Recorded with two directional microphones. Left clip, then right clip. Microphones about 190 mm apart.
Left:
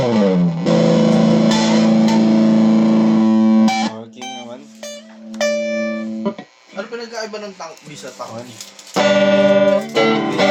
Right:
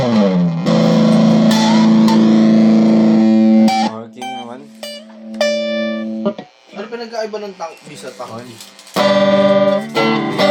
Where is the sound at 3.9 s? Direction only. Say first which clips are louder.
Right 4 dB; 20° right (ahead or behind).